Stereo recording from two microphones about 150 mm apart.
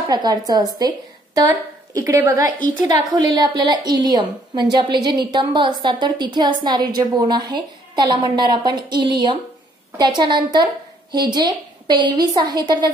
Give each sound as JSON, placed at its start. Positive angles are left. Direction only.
{"t": 0.1, "sound": "a woman's voice", "side_deg": -25}